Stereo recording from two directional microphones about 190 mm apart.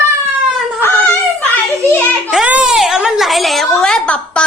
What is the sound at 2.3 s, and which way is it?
A woman's voice, 5° right (ahead or behind).